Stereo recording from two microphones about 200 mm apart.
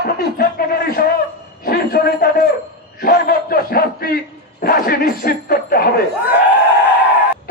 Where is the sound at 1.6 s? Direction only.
50° left (ahead or behind).